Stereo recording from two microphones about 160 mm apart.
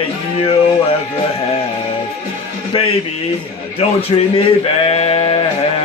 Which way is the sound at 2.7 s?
35° left (ahead or behind).